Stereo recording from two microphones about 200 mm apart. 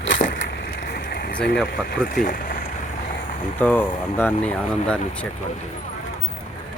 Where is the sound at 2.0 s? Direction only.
45° left (ahead or behind).